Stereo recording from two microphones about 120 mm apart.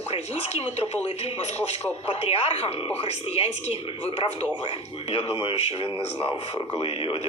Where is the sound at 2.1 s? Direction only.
55° left (ahead or behind).